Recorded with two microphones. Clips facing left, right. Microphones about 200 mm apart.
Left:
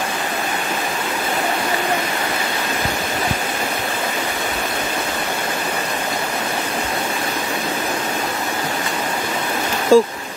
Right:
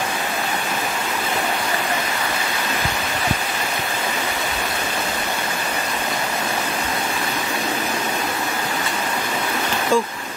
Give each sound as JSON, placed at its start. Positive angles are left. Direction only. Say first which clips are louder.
{"t": 9.9, "sound": "speech", "louder": "left 8 dB", "side_deg": 40}